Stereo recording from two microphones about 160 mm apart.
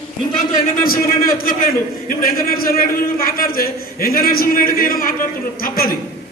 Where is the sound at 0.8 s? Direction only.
65° left (ahead or behind).